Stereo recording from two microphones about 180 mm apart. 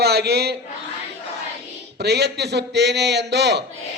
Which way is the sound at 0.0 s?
65° right (ahead or behind).